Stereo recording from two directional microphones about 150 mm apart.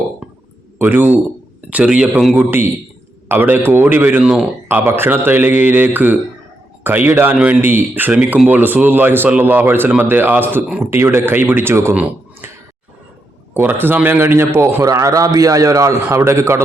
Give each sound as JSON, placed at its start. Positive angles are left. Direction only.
{"t": 0.8, "sound": "speech", "side_deg": -15}
{"t": 13.5, "sound": "a man's voice", "side_deg": -15}